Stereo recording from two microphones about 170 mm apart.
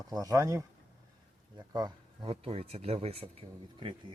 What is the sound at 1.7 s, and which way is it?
Speech, 25° right (ahead or behind).